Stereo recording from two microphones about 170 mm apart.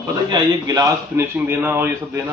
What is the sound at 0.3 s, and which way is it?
A man's voice, 20° right (ahead or behind).